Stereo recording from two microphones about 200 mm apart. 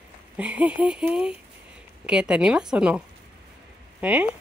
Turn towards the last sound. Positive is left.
turn(degrees=-5)  # may be behind; listen again after turning